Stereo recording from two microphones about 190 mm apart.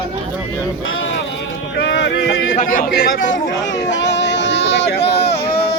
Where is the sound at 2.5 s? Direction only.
45° left (ahead or behind).